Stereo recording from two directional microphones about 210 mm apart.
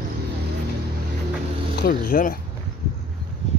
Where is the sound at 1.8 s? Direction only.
45° left (ahead or behind).